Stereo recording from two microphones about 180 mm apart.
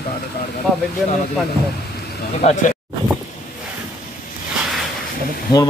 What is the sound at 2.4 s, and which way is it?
Speech, 35° left (ahead or behind).